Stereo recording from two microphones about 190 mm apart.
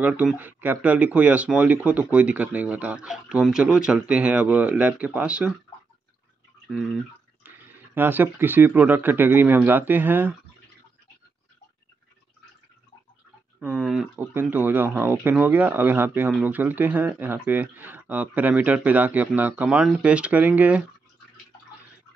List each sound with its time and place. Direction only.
0.0 s speech: 5° right (ahead or behind)
6.7 s drip: 5° right (ahead or behind)
7.4 s speech: 10° right (ahead or behind)
13.6 s speech: 5° right (ahead or behind)